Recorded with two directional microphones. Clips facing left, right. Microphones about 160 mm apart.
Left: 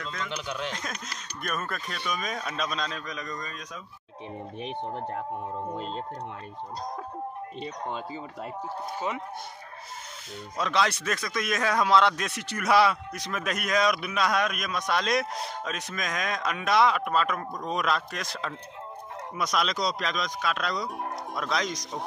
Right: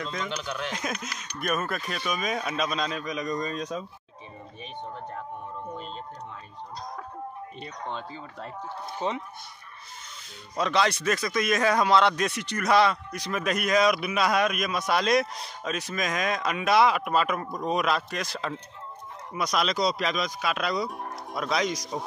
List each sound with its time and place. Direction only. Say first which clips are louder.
0.0 s speech: right 3 dB; 20° right (ahead or behind)
0.3 s speech: right 1 dB; 20° left (ahead or behind)
0.7 s speech: right 3 dB; 10° right (ahead or behind); by 3.8 s 30° right (ahead or behind)
9.0 s speech: right 3 dB; 30° right (ahead or behind)
10.6 s speech: right 2 dB; centre (ahead or behind)